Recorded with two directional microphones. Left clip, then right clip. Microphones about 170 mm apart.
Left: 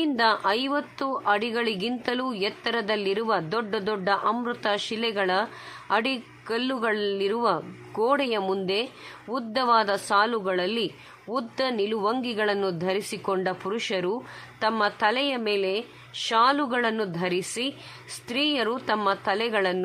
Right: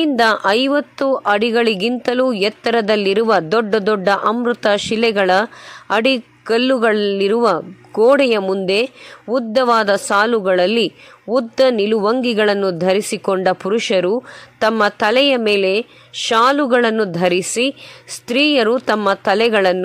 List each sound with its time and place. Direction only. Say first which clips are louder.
0.0 s a woman's voice: right 9 dB; 40° right (ahead or behind)